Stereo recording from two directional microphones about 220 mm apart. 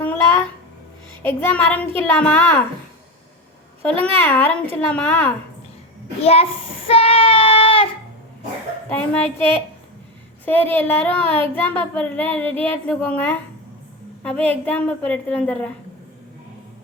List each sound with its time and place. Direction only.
0.0 s a sound: 10° left (ahead or behind)
1.2 s speech: 10° left (ahead or behind)
4.2 s speech: 10° left (ahead or behind)
6.2 s child singing: 25° left (ahead or behind)
8.9 s speech: 5° left (ahead or behind)